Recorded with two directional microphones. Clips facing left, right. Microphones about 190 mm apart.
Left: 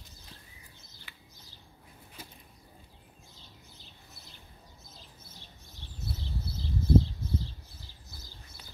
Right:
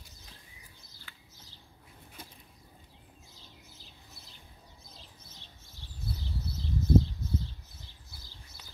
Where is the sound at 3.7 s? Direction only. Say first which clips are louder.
Even; centre (ahead or behind).